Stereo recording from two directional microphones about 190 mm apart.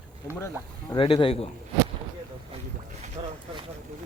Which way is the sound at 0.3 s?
15° left (ahead or behind).